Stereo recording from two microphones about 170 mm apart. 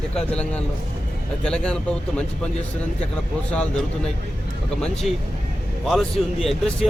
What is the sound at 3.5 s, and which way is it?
Speech, 10° left (ahead or behind).